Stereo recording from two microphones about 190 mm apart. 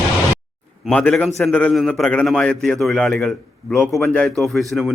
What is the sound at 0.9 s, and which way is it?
A man's voice, 5° left (ahead or behind).